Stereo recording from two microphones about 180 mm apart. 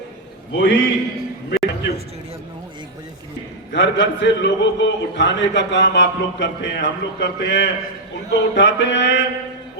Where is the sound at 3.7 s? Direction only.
90° left.